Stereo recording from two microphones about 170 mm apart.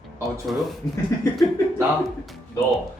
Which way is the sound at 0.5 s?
Centre (ahead or behind).